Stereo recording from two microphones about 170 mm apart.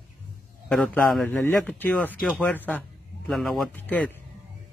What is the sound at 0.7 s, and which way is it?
A man's voice, 10° left (ahead or behind).